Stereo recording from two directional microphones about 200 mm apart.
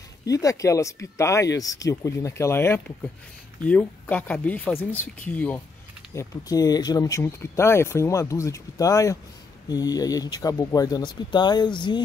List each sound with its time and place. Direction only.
0.2 s speech: 15° left (ahead or behind)
6.1 s speech: 20° left (ahead or behind)